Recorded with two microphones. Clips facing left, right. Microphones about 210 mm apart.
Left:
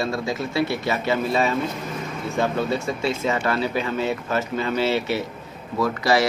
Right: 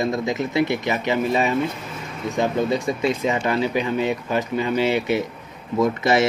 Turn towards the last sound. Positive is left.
turn(degrees=-20)  # may be behind; listen again after turning